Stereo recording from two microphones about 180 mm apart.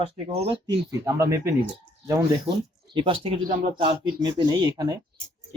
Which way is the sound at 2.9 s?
30° right (ahead or behind).